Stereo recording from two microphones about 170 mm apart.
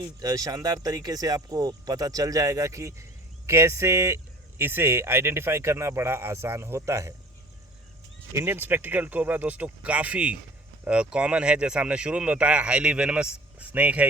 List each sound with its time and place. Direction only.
0.2 s speech: 20° right (ahead or behind)
8.3 s speech: 15° right (ahead or behind)